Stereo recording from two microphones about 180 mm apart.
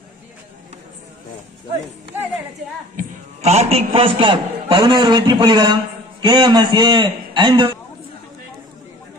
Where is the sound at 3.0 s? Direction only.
40° right (ahead or behind).